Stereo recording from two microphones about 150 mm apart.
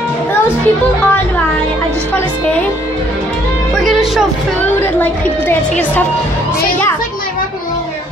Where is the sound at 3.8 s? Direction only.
Centre (ahead or behind).